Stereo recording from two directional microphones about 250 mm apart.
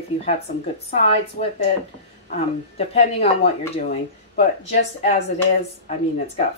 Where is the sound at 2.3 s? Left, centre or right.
Left.